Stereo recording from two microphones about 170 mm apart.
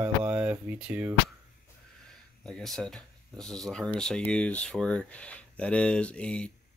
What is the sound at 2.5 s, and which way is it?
Speech, centre (ahead or behind).